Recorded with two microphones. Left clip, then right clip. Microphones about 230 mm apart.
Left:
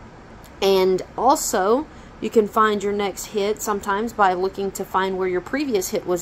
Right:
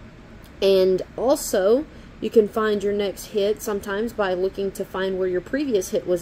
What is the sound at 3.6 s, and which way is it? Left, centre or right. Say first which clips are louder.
Speech: left 3 dB; left.